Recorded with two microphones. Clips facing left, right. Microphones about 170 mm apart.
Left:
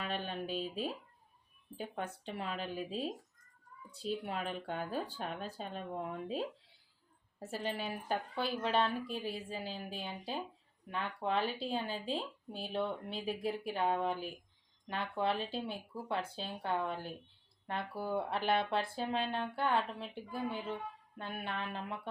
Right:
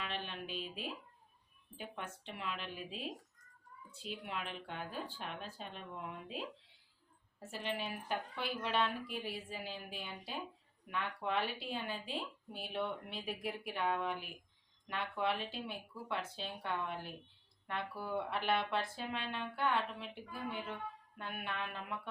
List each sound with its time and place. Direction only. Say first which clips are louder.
0.0 s a sound: left 5 dB; 40° left (ahead or behind)
1.8 s speech: left 5 dB; 35° left (ahead or behind)
21.2 s speech: left 2 dB; 30° left (ahead or behind)